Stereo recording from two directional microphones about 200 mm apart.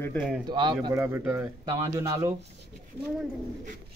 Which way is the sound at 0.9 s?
10° right (ahead or behind).